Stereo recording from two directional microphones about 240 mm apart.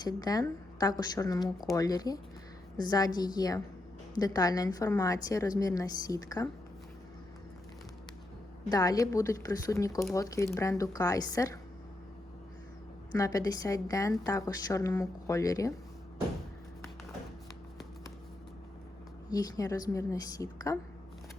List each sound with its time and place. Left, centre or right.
0.0 s a woman's voice: centre
8.7 s a woman's voice: centre
13.1 s a woman's voice: centre
19.3 s a woman's voice: centre